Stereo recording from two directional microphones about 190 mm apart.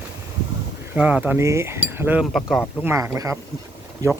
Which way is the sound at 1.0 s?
10° right (ahead or behind).